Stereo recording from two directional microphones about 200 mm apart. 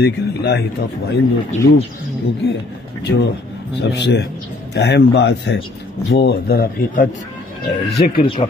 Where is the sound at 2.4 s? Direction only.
55° left (ahead or behind).